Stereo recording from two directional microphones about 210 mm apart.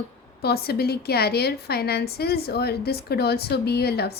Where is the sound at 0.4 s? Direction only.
50° left (ahead or behind).